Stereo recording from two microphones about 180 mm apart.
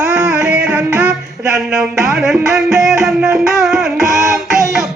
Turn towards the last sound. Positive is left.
turn(degrees=-15)  # may be behind; listen again after turning